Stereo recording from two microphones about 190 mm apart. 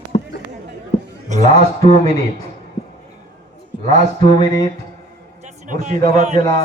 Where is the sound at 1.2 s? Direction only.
40° right (ahead or behind).